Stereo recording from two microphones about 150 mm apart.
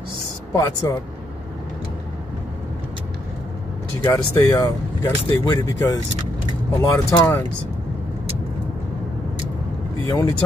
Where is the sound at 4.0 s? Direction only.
15° left (ahead or behind).